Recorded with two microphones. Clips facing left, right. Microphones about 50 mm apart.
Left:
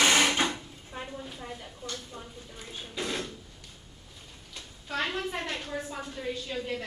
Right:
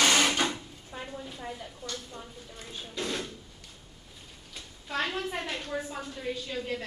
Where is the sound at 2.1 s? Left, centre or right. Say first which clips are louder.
Even; centre.